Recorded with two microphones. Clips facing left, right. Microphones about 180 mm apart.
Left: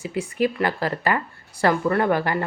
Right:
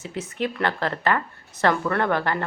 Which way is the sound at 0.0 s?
10° left (ahead or behind).